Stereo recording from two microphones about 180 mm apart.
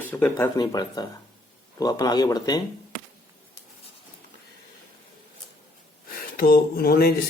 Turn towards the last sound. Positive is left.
turn(degrees=60)  # may be behind; listen again after turning